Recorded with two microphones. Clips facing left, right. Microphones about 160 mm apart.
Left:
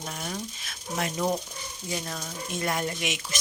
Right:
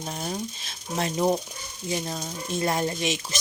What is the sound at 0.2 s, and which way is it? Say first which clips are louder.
Speech: right 4 dB; 30° right (ahead or behind).